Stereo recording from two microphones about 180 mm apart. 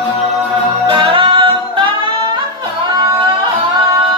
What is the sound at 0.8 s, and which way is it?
Music, 30° right (ahead or behind).